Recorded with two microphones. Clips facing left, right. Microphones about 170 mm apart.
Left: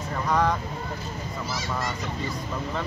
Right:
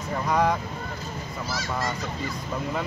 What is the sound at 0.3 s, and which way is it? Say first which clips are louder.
Speech: right 1 dB; 10° right (ahead or behind).